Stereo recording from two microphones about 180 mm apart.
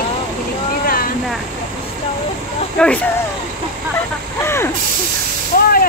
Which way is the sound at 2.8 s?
5° left (ahead or behind).